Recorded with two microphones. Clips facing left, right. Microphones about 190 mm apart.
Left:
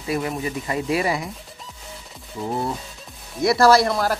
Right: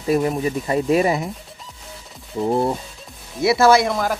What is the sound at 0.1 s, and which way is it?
Speech, 35° right (ahead or behind).